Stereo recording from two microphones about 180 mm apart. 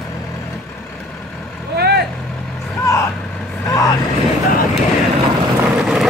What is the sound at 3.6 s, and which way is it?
Speech, 20° left (ahead or behind).